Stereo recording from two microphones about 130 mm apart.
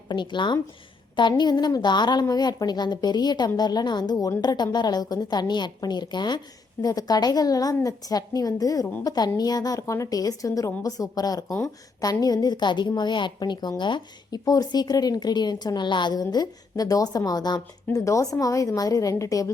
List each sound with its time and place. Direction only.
0.1 s a woman's voice: 35° left (ahead or behind)